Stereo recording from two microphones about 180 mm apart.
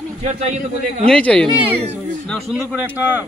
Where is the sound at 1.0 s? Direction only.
5° left (ahead or behind).